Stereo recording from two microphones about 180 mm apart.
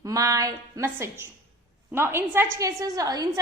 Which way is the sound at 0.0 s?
20° right (ahead or behind).